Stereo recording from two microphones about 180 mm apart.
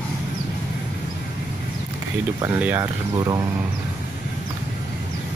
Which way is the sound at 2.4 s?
10° right (ahead or behind).